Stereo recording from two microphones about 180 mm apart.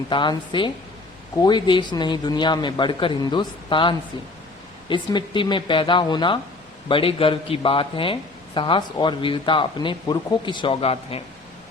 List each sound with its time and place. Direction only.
0.1 s speech: 25° left (ahead or behind)